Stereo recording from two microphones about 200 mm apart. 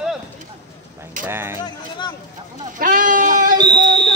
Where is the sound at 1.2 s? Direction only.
10° right (ahead or behind).